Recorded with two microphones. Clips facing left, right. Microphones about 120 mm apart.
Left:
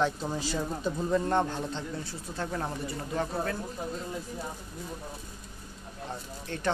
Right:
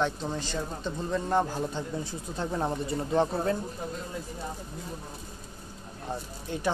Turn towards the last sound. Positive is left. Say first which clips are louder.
# right 1 dB
turn(degrees=-15)  # may be behind; listen again after turning